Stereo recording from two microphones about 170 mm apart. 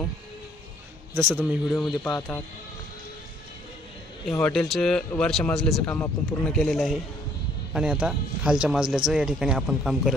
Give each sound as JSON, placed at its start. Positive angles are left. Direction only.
{"t": 1.1, "sound": "speech", "side_deg": -10}
{"t": 2.0, "sound": "speech", "side_deg": 15}
{"t": 4.4, "sound": "speech", "side_deg": 5}